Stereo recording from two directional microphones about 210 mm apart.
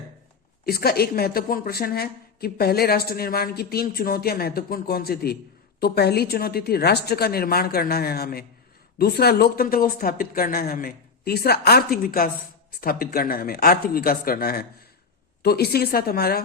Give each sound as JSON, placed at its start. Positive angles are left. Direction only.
{"t": 0.6, "sound": "a woman's voice", "side_deg": 45}